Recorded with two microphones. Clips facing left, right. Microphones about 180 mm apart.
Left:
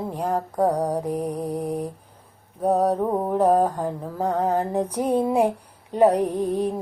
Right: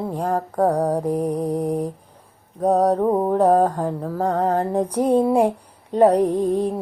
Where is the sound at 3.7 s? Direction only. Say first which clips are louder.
Right 3 dB; 65° right (ahead or behind).